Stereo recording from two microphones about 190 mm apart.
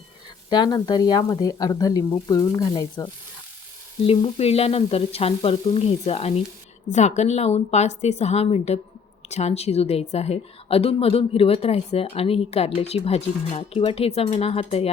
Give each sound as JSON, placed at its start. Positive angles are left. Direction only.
{"t": 0.5, "sound": "speech", "side_deg": 20}
{"t": 4.0, "sound": "a woman's voice", "side_deg": 30}